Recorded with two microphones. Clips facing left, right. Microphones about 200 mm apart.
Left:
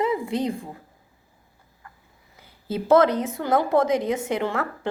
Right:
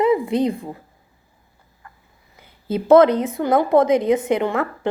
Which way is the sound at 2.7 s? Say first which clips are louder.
Right 5 dB; 20° right (ahead or behind).